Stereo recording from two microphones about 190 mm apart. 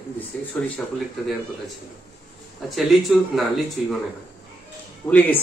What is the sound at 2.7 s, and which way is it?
A man's voice, centre (ahead or behind).